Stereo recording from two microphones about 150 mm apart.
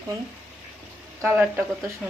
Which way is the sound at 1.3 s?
10° right (ahead or behind).